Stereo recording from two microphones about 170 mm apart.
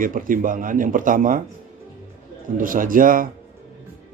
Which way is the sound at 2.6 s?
50° right (ahead or behind).